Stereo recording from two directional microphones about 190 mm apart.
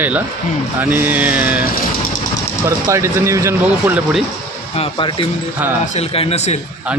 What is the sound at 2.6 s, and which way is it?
A man's voice, 15° right (ahead or behind).